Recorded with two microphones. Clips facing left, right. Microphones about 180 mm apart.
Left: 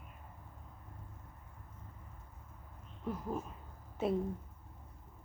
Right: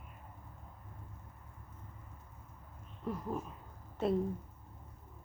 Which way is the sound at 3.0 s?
Centre (ahead or behind).